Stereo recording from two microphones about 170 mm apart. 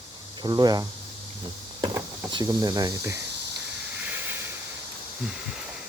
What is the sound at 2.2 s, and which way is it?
Speech, 25° right (ahead or behind).